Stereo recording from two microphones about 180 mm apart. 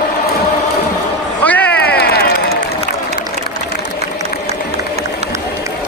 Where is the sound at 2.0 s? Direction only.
60° left (ahead or behind).